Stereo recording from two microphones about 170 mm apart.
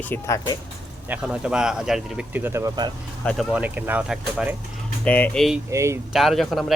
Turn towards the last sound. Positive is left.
turn(degrees=0)  # may be behind; listen again after turning